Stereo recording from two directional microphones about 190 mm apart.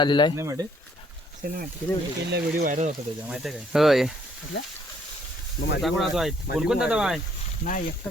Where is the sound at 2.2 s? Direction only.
60° right (ahead or behind).